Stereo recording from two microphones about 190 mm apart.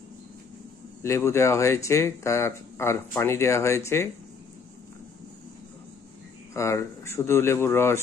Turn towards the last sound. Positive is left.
turn(degrees=10)  # may be behind; listen again after turning